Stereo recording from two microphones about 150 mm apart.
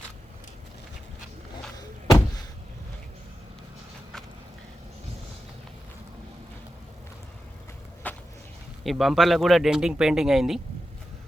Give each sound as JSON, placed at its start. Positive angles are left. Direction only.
{"t": 1.7, "sound": "door", "side_deg": 25}
{"t": 8.0, "sound": "a sound", "side_deg": 10}
{"t": 8.8, "sound": "speech", "side_deg": 0}